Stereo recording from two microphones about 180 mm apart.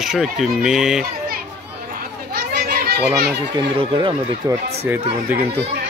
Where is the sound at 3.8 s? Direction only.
25° right (ahead or behind).